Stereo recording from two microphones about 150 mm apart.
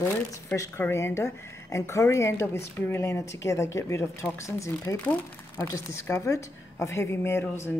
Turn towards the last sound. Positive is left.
turn(degrees=15)  # may be behind; listen again after turning